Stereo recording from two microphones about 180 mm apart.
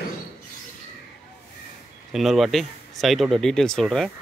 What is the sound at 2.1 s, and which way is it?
Speech, centre (ahead or behind).